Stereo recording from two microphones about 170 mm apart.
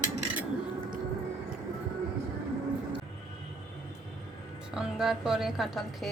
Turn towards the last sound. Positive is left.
turn(degrees=0)  # may be behind; listen again after turning